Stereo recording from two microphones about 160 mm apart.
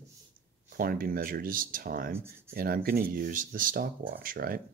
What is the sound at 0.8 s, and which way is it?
Speech, 60° right (ahead or behind).